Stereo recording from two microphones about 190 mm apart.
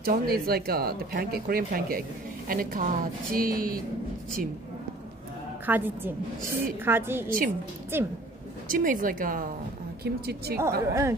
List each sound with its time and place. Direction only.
0.0 s speech: 50° right (ahead or behind)
5.7 s a woman's voice: 10° right (ahead or behind)
7.2 s speech: 45° right (ahead or behind)
7.9 s a woman's voice: 10° right (ahead or behind)
8.6 s speech: 45° right (ahead or behind)
10.8 s a woman's voice: 15° right (ahead or behind)